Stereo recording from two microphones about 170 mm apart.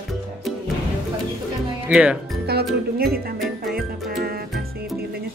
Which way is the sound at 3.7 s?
60° right (ahead or behind).